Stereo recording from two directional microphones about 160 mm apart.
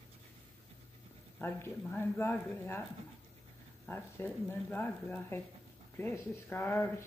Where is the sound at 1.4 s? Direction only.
15° left (ahead or behind).